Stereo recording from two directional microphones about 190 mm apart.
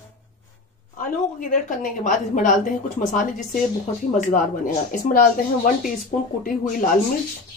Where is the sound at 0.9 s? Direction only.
45° left (ahead or behind).